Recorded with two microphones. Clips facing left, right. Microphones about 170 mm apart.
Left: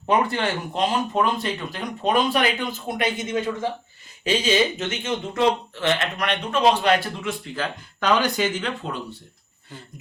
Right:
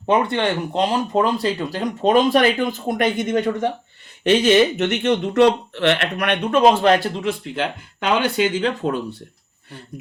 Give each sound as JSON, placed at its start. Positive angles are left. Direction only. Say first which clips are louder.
{"t": 0.0, "sound": "speech", "louder": "right 3 dB", "side_deg": -25}
{"t": 2.8, "sound": "speech", "louder": "right 5 dB", "side_deg": -55}
{"t": 8.1, "sound": "speech", "louder": "right 3 dB", "side_deg": -30}